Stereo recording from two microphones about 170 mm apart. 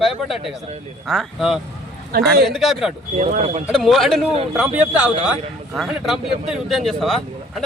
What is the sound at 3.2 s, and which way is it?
Speech, 45° right (ahead or behind).